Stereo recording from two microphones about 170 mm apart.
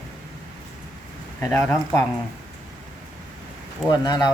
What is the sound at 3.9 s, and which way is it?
Speech, 25° left (ahead or behind).